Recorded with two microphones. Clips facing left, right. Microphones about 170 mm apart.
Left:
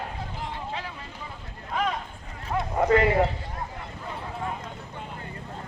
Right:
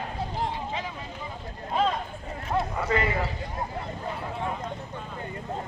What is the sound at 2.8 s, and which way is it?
Speech, 55° left (ahead or behind).